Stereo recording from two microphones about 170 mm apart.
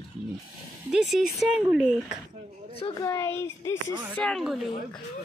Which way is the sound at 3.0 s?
15° left (ahead or behind).